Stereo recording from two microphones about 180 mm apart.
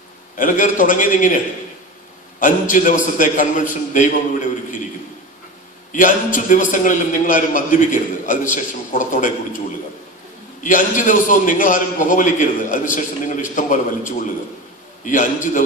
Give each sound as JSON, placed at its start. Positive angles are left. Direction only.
{"t": 0.4, "sound": "a man's voice", "side_deg": 50}
{"t": 2.7, "sound": "a man's voice", "side_deg": 45}
{"t": 5.9, "sound": "a man's voice", "side_deg": 45}
{"t": 10.6, "sound": "a man's voice", "side_deg": 45}